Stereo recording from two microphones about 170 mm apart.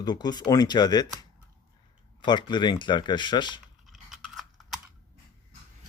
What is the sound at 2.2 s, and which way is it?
Speech, 25° left (ahead or behind).